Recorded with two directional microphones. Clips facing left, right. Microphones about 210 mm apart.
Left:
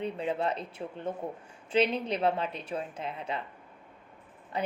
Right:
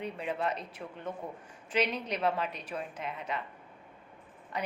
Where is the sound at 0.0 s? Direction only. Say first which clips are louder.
Left 3 dB; 30° left (ahead or behind).